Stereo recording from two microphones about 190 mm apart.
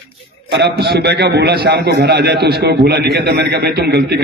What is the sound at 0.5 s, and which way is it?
A man's voice, 60° right (ahead or behind).